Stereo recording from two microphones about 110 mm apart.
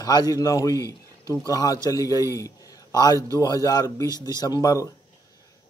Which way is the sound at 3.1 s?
30° right (ahead or behind).